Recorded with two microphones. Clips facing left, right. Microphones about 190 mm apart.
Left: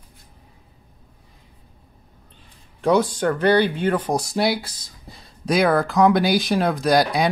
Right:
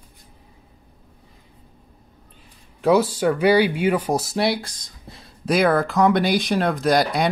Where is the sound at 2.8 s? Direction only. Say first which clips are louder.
Right 1 dB; 5° right (ahead or behind).